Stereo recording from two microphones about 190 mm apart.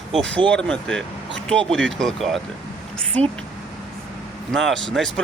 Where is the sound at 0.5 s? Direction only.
5° left (ahead or behind).